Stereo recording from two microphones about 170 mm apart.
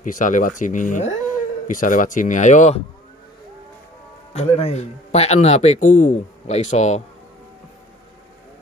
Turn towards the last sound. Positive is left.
turn(degrees=45)  # may be behind; listen again after turning